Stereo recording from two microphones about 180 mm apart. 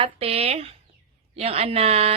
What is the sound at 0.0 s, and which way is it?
A woman's voice, 35° right (ahead or behind).